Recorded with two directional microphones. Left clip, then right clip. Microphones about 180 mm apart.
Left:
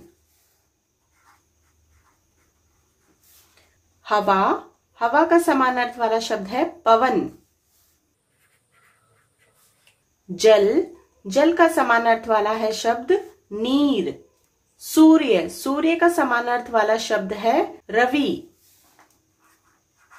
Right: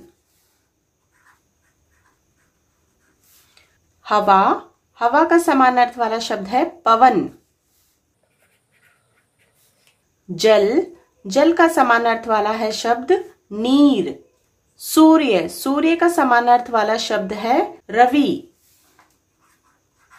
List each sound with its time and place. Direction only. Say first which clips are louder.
4.0 s speech: right 5 dB; 30° right (ahead or behind)
10.3 s speech: right 1 dB; 30° right (ahead or behind)